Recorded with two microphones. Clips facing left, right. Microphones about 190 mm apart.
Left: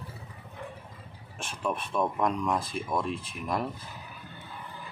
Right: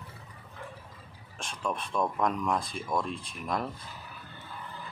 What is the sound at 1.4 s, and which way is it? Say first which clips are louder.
Speech: left 2 dB; 5° left (ahead or behind).